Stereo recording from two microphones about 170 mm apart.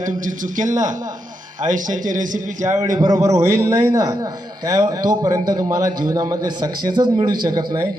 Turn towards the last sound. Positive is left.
turn(degrees=-25)  # may be behind; listen again after turning